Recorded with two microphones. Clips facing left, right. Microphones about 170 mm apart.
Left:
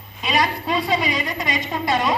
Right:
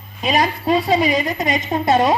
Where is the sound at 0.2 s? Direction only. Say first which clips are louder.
Right 3 dB; 50° right (ahead or behind).